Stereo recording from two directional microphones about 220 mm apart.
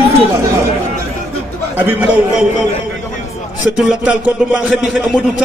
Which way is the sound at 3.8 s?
5° right (ahead or behind).